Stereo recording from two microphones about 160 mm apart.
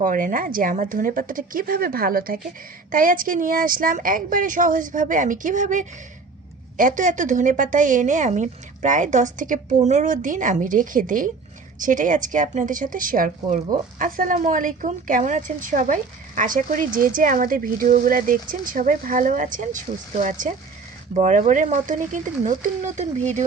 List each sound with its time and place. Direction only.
0.0 s a woman's voice: 55° right (ahead or behind)